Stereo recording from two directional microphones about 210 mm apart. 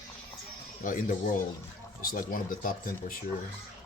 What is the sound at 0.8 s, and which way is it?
Speech, 40° left (ahead or behind).